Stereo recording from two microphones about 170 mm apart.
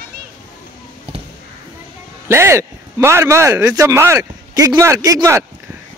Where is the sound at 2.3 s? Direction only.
15° right (ahead or behind).